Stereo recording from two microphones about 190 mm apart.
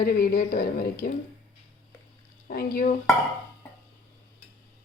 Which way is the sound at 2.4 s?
50° left (ahead or behind).